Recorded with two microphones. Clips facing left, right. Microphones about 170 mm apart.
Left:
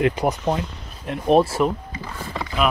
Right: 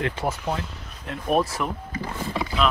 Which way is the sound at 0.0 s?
15° left (ahead or behind).